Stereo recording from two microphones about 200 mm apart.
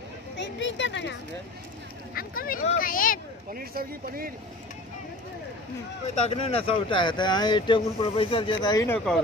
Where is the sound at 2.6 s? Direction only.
45° left (ahead or behind).